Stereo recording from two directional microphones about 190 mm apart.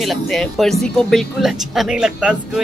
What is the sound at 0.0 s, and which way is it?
Speech, centre (ahead or behind).